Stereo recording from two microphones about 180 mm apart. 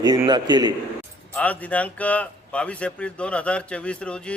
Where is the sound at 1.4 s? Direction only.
10° left (ahead or behind).